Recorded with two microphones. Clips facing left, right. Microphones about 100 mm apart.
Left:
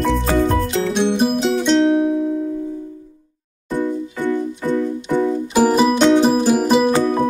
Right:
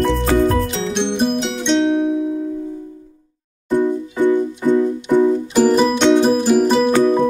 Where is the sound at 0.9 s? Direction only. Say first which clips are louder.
Even; 5° left (ahead or behind).